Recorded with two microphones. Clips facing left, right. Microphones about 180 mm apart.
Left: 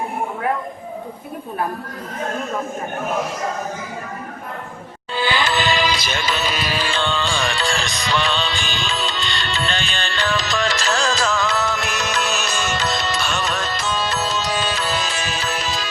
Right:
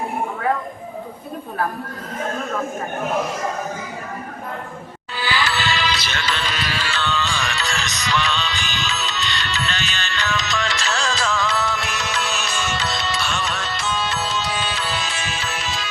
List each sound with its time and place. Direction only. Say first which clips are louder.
5.1 s music: left 3 dB; 20° left (ahead or behind)
6.9 s music: even; 25° left (ahead or behind)